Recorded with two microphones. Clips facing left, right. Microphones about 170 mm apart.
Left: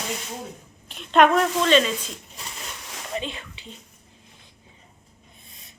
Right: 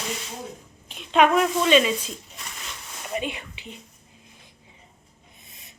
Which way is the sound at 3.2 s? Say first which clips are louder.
Right 3 dB; 15° right (ahead or behind).